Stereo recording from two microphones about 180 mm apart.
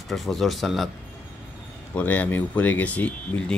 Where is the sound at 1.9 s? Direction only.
10° left (ahead or behind).